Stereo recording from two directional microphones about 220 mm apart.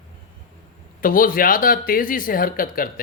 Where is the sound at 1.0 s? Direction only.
40° left (ahead or behind).